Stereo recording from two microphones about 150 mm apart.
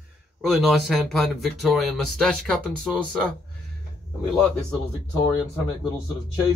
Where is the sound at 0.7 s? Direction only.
Centre (ahead or behind).